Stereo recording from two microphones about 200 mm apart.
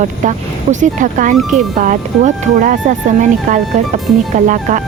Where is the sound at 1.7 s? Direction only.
40° right (ahead or behind).